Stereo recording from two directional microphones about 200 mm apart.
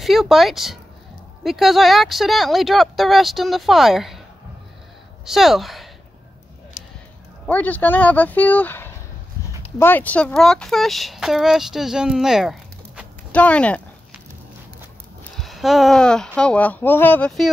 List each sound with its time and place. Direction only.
0.0 s speech: centre (ahead or behind)
5.2 s speech: centre (ahead or behind)
6.8 s a sound: 40° left (ahead or behind)
7.4 s speech: 10° left (ahead or behind)
15.3 s speech: centre (ahead or behind)